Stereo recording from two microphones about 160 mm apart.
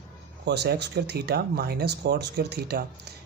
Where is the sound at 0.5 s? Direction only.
90° right.